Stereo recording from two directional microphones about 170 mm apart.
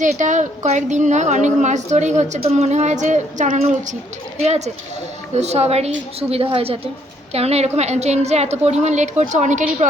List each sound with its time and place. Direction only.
0.0 s a woman's voice: 45° right (ahead or behind)